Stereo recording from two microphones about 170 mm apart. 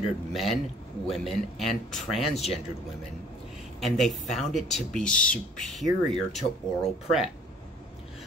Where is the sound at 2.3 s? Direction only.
40° left (ahead or behind).